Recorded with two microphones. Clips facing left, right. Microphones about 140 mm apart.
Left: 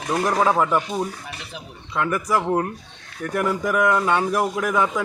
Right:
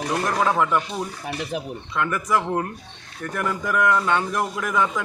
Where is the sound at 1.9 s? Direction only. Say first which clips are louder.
Left 1 dB; 5° left (ahead or behind).